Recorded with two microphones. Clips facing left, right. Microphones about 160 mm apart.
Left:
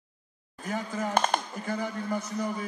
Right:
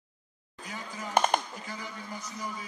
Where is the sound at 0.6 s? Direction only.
50° left (ahead or behind).